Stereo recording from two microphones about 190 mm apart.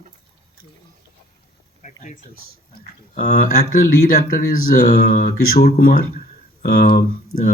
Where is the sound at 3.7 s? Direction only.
50° left (ahead or behind).